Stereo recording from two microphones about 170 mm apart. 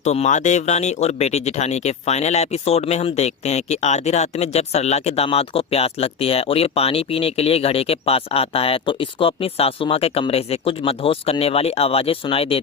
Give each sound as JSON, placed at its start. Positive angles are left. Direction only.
{"t": 0.0, "sound": "speech", "side_deg": 40}